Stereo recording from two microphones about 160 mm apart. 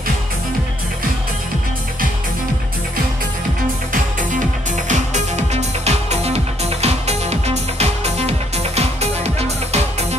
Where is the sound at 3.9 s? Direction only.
55° right (ahead or behind).